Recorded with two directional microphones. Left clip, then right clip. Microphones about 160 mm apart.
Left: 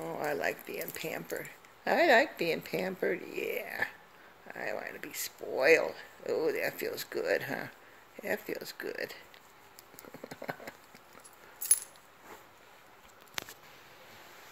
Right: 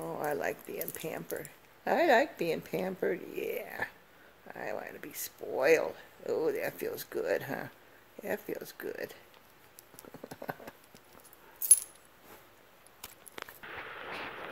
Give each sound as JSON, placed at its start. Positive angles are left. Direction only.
{"t": 0.0, "sound": "speech", "side_deg": -5}
{"t": 10.3, "sound": "clip-clop", "side_deg": 0}